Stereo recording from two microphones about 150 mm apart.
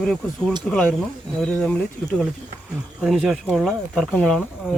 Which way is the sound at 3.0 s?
5° right (ahead or behind).